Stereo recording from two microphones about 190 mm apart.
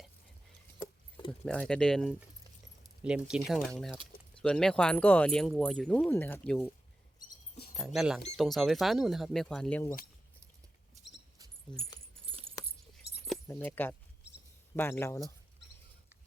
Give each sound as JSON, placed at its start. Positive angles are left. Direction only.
{"t": 0.8, "sound": "a sound", "side_deg": 20}
{"t": 1.3, "sound": "speech", "side_deg": 5}
{"t": 7.7, "sound": "speech", "side_deg": 0}
{"t": 11.7, "sound": "speech", "side_deg": 5}
{"t": 12.2, "sound": "keys jangling", "side_deg": -30}
{"t": 13.5, "sound": "speech", "side_deg": 10}